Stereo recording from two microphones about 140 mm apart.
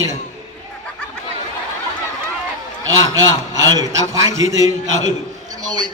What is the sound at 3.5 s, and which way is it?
Speech, 25° right (ahead or behind).